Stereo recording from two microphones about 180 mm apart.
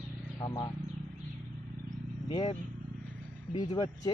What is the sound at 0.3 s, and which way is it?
Speech, 25° left (ahead or behind).